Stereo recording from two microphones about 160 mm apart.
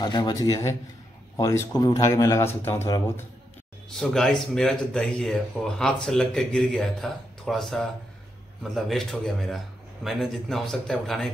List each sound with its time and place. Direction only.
0.0 s speech: 25° left (ahead or behind)
3.9 s speech: centre (ahead or behind)